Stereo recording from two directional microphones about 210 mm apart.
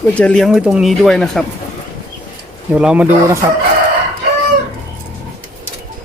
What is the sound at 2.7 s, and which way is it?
Speech, 5° right (ahead or behind).